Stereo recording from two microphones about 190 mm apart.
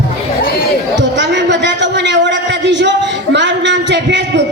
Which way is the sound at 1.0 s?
65° right (ahead or behind).